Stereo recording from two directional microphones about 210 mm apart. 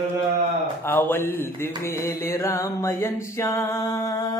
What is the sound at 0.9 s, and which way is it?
Music, 10° left (ahead or behind).